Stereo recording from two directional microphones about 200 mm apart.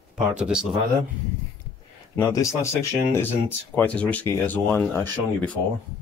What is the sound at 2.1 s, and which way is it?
Speech, 15° left (ahead or behind).